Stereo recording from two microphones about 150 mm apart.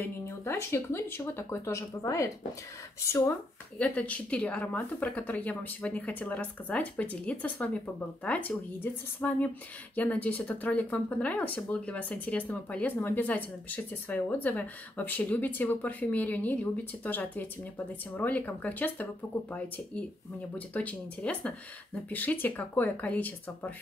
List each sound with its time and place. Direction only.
0.0 s speech: 15° left (ahead or behind)
20.5 s speech: 10° left (ahead or behind)